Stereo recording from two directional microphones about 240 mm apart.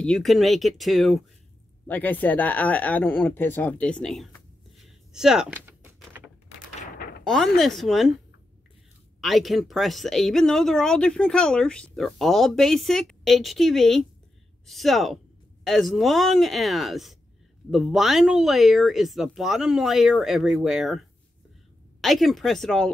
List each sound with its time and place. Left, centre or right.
0.0 s speech: centre
4.7 s a sound: centre
6.8 s door: left
7.2 s speech: centre
9.2 s speech: centre
22.0 s speech: centre